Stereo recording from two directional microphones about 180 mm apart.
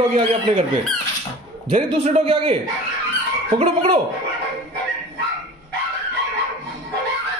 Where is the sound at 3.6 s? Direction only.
35° right (ahead or behind).